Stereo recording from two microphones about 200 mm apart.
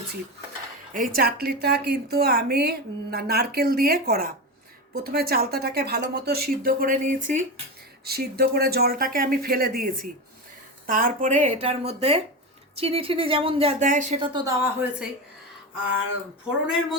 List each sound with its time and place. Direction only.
0.9 s a woman's voice: 45° right (ahead or behind)
8.0 s a woman's voice: 50° right (ahead or behind)
14.2 s a woman's voice: 20° right (ahead or behind)
14.6 s a woman's voice: 10° right (ahead or behind)